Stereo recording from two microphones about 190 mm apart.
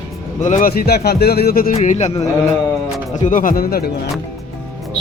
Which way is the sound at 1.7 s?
35° left (ahead or behind).